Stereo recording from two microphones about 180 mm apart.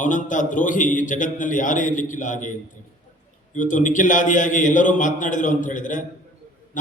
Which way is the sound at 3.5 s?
45° left (ahead or behind).